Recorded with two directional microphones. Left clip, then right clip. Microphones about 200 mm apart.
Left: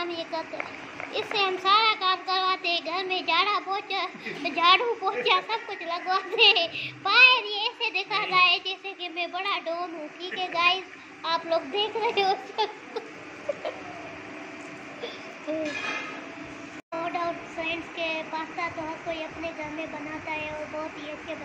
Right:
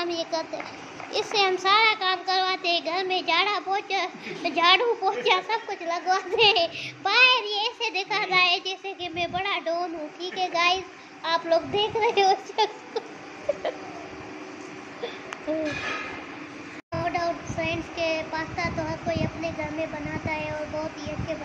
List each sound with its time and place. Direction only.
0.0 s a sound: 15° right (ahead or behind)
1.1 s a child's voice: 15° right (ahead or behind)
13.5 s a sound: 15° right (ahead or behind)
15.5 s a child's voice: 15° right (ahead or behind)
16.9 s a child's voice: 15° right (ahead or behind)
20.5 s a child's voice: centre (ahead or behind)